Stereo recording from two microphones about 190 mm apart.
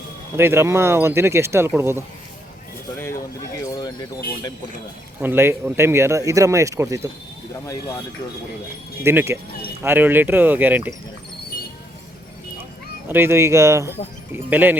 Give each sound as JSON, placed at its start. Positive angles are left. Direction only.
{"t": 0.3, "sound": "speech", "side_deg": -10}
{"t": 2.9, "sound": "a sound", "side_deg": 15}
{"t": 5.2, "sound": "speech", "side_deg": -10}
{"t": 9.0, "sound": "speech", "side_deg": -15}
{"t": 13.1, "sound": "speech", "side_deg": -10}